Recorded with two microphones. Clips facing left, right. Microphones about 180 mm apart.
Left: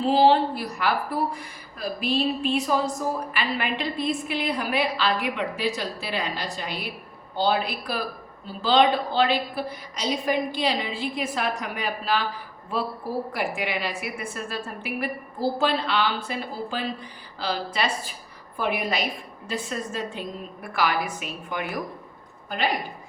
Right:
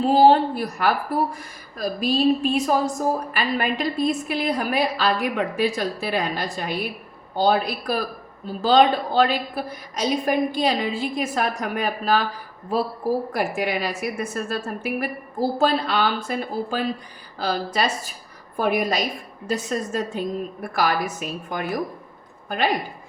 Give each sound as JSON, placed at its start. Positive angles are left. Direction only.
{"t": 0.0, "sound": "a woman's voice", "side_deg": -45}
{"t": 13.3, "sound": "a woman's voice", "side_deg": -45}